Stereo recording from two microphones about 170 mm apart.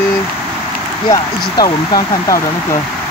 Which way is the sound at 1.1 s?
20° left (ahead or behind).